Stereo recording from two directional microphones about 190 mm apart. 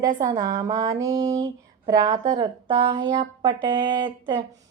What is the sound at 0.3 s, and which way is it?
A woman's voice, 20° right (ahead or behind).